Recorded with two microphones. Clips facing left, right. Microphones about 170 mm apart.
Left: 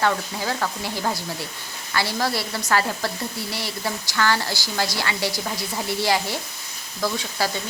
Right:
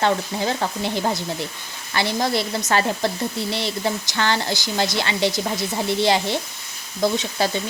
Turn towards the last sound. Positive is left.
turn(degrees=-20)  # may be behind; listen again after turning